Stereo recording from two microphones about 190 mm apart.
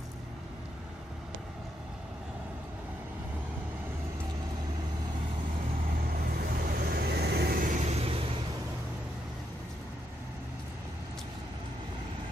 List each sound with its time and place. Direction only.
6.3 s vehicle: 50° right (ahead or behind); by 8.1 s 35° right (ahead or behind)